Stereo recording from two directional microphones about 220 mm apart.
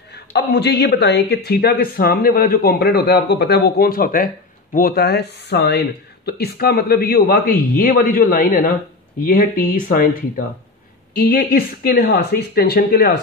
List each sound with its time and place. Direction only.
0.1 s a man's voice: 50° left (ahead or behind)